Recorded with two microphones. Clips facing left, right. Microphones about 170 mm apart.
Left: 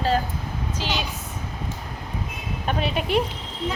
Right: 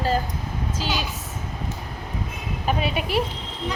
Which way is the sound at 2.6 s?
5° right (ahead or behind).